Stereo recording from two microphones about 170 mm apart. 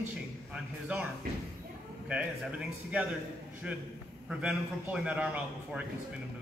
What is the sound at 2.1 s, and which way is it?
A man's voice, 5° right (ahead or behind).